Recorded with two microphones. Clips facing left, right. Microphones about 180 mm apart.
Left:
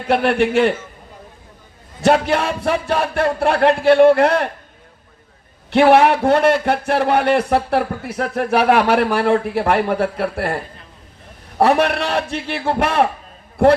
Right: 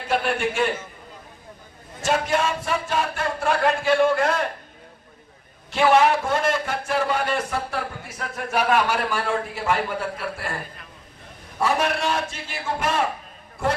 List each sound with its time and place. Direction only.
0.1 s a man's voice: 65° left (ahead or behind)
2.0 s a man's voice: 65° left (ahead or behind)
5.7 s a man's voice: 60° left (ahead or behind)
11.5 s a man's voice: 65° left (ahead or behind)